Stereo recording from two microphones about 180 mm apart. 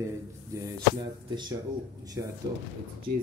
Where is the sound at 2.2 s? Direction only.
15° right (ahead or behind).